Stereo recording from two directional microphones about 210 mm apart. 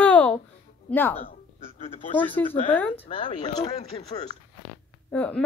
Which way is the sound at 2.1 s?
10° left (ahead or behind).